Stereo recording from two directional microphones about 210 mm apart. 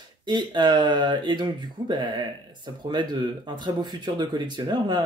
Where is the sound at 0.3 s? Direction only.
20° right (ahead or behind).